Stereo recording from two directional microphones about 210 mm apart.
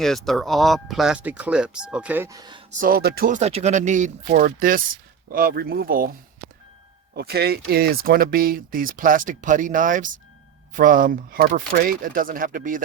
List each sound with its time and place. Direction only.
0.0 s speech: centre (ahead or behind); by 2.6 s 20° right (ahead or behind)
2.8 s speech: 45° right (ahead or behind)
7.1 s speech: 50° right (ahead or behind)